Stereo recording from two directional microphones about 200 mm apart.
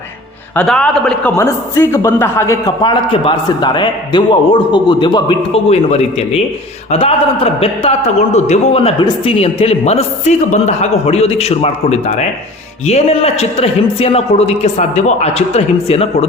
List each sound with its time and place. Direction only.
0.5 s a man's voice: 5° left (ahead or behind); by 16.0 s 30° left (ahead or behind)